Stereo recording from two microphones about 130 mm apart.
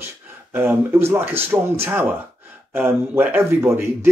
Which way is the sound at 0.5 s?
15° right (ahead or behind).